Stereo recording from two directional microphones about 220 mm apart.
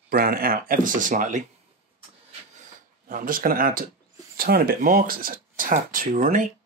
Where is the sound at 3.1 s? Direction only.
40° right (ahead or behind).